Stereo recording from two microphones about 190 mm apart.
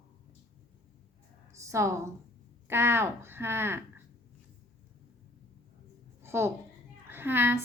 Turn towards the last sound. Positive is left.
turn(degrees=-10)  # may be behind; listen again after turning